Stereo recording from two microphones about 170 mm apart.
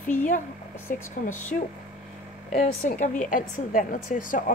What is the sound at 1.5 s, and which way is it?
A woman's voice, 60° left (ahead or behind).